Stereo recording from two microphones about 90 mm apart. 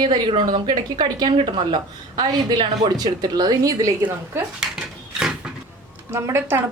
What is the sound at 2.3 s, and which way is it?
A woman's voice, 50° right (ahead or behind).